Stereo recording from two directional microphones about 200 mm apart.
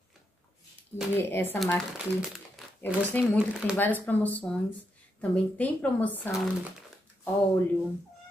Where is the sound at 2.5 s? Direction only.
10° left (ahead or behind).